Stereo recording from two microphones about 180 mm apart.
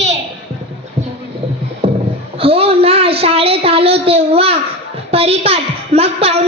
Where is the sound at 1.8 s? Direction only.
30° right (ahead or behind).